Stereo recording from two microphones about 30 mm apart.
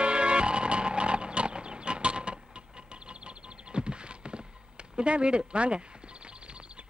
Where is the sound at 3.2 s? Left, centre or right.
Right.